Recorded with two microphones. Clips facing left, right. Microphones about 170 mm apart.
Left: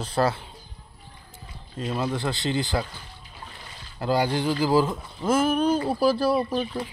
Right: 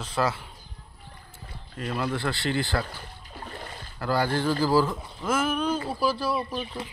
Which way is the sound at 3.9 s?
20° left (ahead or behind).